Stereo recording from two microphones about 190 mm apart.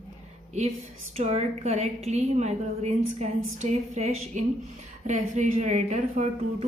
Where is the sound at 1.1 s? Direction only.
35° right (ahead or behind).